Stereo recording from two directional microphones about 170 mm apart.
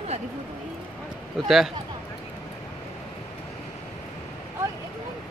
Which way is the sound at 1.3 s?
Centre (ahead or behind).